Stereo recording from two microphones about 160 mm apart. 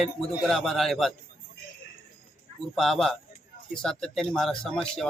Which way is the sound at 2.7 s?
Centre (ahead or behind).